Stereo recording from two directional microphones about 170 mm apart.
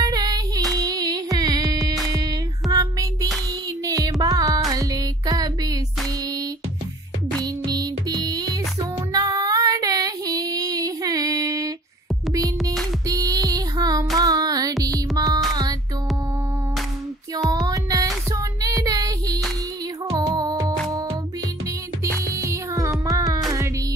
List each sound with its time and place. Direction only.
0.0 s female singing: 20° right (ahead or behind)
0.7 s music: 20° right (ahead or behind)
7.4 s music: 25° right (ahead or behind)
9.1 s child singing: 20° right (ahead or behind)
13.0 s music: 20° right (ahead or behind)
13.5 s a sound: 20° right (ahead or behind)
14.1 s music: 20° right (ahead or behind)
17.6 s music: 20° right (ahead or behind)
22.3 s music: 15° right (ahead or behind)